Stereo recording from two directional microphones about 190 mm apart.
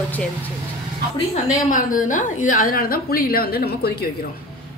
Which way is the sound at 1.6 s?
45° left (ahead or behind).